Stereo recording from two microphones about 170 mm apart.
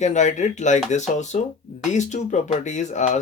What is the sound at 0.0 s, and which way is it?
Speech, 45° left (ahead or behind).